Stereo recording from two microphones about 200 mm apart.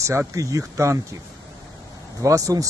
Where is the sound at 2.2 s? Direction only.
15° right (ahead or behind).